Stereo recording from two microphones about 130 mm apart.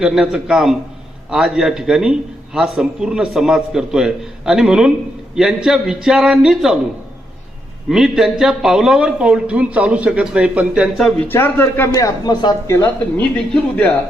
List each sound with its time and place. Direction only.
0.0 s a man's voice: 5° right (ahead or behind)
7.9 s speech: 5° right (ahead or behind)
11.2 s speech: 15° left (ahead or behind); by 12.5 s 35° left (ahead or behind)
12.6 s speech: 20° left (ahead or behind)
13.1 s speech: 10° left (ahead or behind)